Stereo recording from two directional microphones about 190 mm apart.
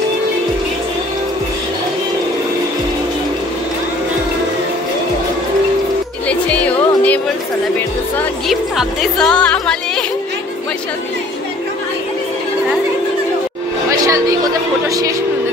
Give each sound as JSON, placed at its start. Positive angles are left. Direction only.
{"t": 6.2, "sound": "music", "side_deg": 5}
{"t": 8.5, "sound": "music", "side_deg": 0}
{"t": 13.8, "sound": "a sound", "side_deg": -15}
{"t": 14.9, "sound": "speech", "side_deg": -20}